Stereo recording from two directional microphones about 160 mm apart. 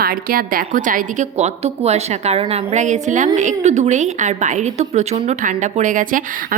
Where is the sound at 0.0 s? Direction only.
65° right (ahead or behind).